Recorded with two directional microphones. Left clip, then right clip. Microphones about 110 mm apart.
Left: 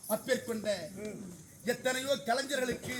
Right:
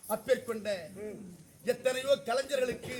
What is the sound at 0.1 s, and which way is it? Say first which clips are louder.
A man's voice: right 2 dB; 15° right (ahead or behind).